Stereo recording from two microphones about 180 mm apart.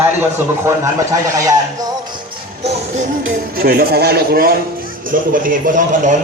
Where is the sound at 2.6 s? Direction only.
40° right (ahead or behind).